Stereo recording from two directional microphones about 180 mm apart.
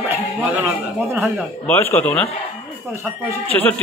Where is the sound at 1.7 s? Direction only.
10° left (ahead or behind).